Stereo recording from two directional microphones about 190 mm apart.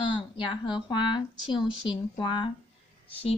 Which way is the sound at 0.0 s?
25° left (ahead or behind).